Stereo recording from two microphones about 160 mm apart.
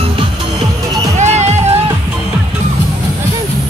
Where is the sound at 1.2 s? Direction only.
45° right (ahead or behind).